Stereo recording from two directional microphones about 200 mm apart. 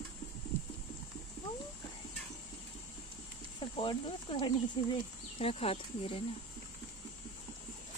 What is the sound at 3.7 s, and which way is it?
Speech, 25° left (ahead or behind).